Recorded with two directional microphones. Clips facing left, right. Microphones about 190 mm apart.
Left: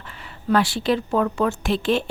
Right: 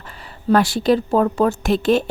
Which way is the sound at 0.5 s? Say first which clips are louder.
Right 4 dB; 45° right (ahead or behind).